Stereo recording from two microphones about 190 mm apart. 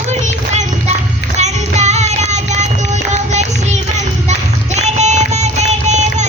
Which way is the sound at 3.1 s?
35° right (ahead or behind).